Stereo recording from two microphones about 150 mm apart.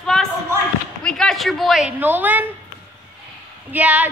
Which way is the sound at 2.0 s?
10° right (ahead or behind).